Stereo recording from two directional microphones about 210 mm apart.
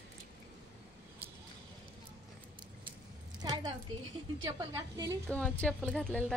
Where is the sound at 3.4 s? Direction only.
20° right (ahead or behind).